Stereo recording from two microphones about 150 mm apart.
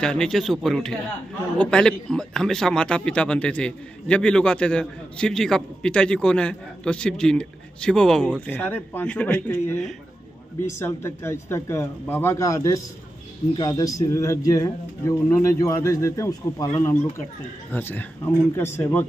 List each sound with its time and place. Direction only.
0.0 s a man's voice: 5° left (ahead or behind); by 16.6 s 20° left (ahead or behind)
17.7 s speech: 10° left (ahead or behind)